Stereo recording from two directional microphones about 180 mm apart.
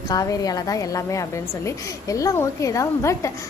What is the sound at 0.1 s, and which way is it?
A woman's voice, 20° left (ahead or behind).